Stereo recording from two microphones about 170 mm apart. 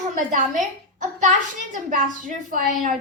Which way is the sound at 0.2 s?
50° right (ahead or behind).